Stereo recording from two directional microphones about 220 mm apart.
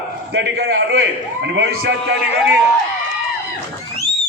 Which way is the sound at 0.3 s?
50° right (ahead or behind).